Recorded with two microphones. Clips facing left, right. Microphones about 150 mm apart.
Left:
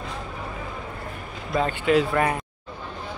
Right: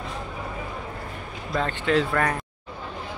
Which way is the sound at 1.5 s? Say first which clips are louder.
Left 3 dB; 10° left (ahead or behind).